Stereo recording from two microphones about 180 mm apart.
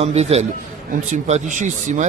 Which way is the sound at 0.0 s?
35° right (ahead or behind).